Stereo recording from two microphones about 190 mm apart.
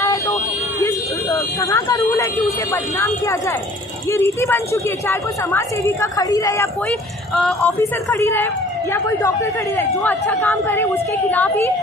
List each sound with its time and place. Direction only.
0.0 s vehicle: 15° left (ahead or behind)
2.7 s a woman's voice: 15° left (ahead or behind)
7.3 s speech: 5° left (ahead or behind)
7.8 s a woman's voice: 15° left (ahead or behind)
9.8 s a woman's voice: 10° left (ahead or behind)